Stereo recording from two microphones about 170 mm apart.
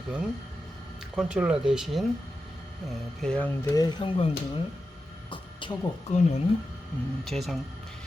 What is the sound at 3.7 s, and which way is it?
Speech, 25° left (ahead or behind).